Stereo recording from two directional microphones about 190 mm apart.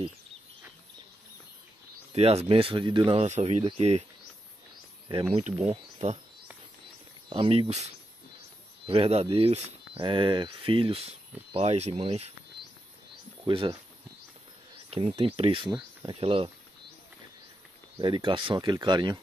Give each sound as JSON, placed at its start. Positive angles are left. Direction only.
{"t": 2.1, "sound": "speech", "side_deg": -30}
{"t": 5.3, "sound": "speech", "side_deg": -35}
{"t": 7.2, "sound": "speech", "side_deg": -30}
{"t": 13.5, "sound": "speech", "side_deg": -25}
{"t": 14.9, "sound": "speech", "side_deg": -30}
{"t": 17.9, "sound": "speech", "side_deg": -25}